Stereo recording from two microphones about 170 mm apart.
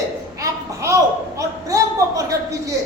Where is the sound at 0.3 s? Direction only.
20° right (ahead or behind).